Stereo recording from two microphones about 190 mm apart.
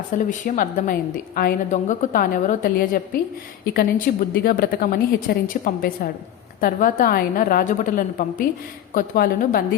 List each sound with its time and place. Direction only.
0.1 s a woman's voice: 45° left (ahead or behind)